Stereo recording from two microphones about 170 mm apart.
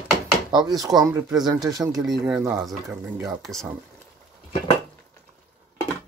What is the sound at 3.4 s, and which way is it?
Speech, centre (ahead or behind).